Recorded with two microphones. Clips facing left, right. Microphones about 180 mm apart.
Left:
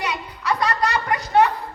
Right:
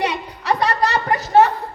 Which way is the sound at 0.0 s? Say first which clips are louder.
Right 4 dB; 30° right (ahead or behind).